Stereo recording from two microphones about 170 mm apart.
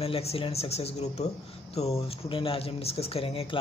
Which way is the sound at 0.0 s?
35° left (ahead or behind).